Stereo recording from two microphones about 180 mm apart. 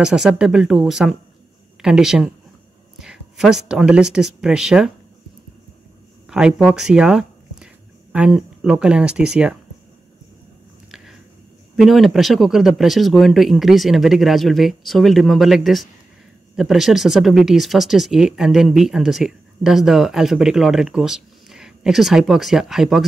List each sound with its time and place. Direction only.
0.0 s speech: 5° right (ahead or behind)
6.2 s speech: 5° right (ahead or behind)
11.7 s speech: centre (ahead or behind)